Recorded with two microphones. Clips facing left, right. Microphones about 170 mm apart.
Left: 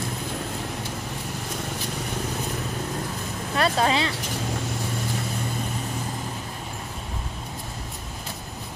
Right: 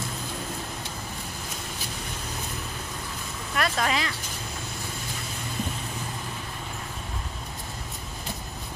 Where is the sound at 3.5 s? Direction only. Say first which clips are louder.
Left 4 dB; 30° left (ahead or behind).